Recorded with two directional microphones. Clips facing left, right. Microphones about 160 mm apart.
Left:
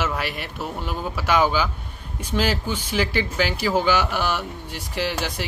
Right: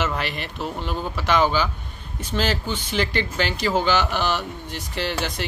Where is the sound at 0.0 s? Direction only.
5° left (ahead or behind).